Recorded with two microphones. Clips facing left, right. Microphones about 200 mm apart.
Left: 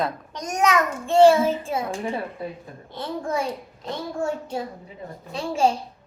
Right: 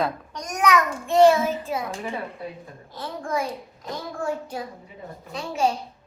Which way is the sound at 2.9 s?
25° left (ahead or behind).